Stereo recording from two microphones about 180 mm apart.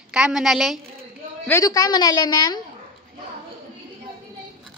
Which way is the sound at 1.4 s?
20° left (ahead or behind).